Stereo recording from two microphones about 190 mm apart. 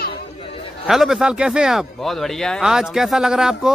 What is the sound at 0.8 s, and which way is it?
Speech, centre (ahead or behind).